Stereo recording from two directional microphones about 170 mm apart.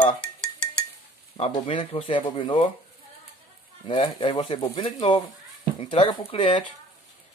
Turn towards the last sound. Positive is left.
turn(degrees=40)  # may be behind; listen again after turning